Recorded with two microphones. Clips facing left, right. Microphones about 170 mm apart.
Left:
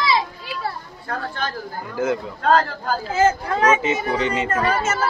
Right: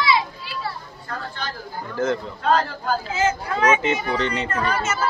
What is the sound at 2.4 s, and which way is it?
Speech, 40° left (ahead or behind).